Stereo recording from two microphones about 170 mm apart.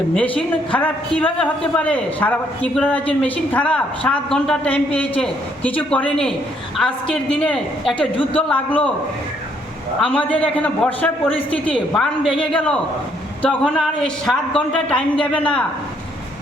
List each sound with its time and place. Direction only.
0.1 s a woman's voice: 5° left (ahead or behind)
7.9 s a woman's voice: 30° left (ahead or behind)
8.3 s a woman's voice: 10° left (ahead or behind)
10.0 s a woman's voice: 10° left (ahead or behind)